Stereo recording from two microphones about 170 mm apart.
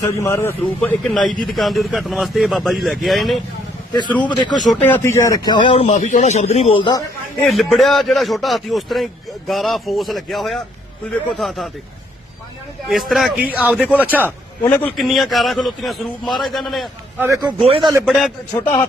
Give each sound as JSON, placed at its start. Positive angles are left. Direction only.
{"t": 0.0, "sound": "a man's voice", "side_deg": 15}
{"t": 0.8, "sound": "a man's voice", "side_deg": 5}
{"t": 4.2, "sound": "speech", "side_deg": 25}
{"t": 4.7, "sound": "speech", "side_deg": 10}
{"t": 7.4, "sound": "a man's voice", "side_deg": 0}
{"t": 12.9, "sound": "a man's voice", "side_deg": 0}
{"t": 14.3, "sound": "a man's voice", "side_deg": 10}
{"t": 14.9, "sound": "a man's voice", "side_deg": 0}
{"t": 17.2, "sound": "speech", "side_deg": -20}
{"t": 17.6, "sound": "a man's voice", "side_deg": -35}
{"t": 18.0, "sound": "a man's voice", "side_deg": 0}